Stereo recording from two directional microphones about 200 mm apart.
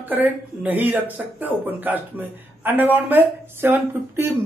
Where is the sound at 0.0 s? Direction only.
10° right (ahead or behind).